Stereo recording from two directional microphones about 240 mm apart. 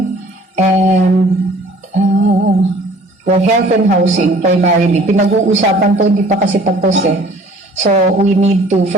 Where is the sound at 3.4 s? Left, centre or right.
Right.